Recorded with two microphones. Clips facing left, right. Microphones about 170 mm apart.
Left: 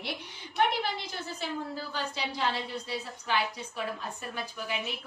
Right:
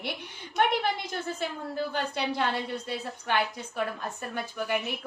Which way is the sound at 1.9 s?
60° right (ahead or behind).